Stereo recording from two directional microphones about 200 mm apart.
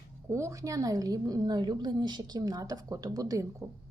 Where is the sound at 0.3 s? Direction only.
15° right (ahead or behind).